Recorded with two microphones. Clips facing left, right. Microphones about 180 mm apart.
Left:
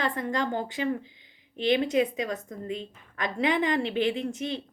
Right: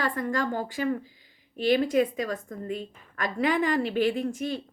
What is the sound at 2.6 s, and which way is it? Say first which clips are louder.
Speech: right 1 dB; 45° right (ahead or behind).